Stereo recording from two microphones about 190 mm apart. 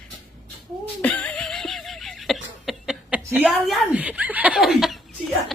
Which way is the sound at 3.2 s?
10° right (ahead or behind).